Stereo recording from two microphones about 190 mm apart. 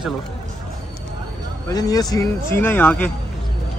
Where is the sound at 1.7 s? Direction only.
20° left (ahead or behind).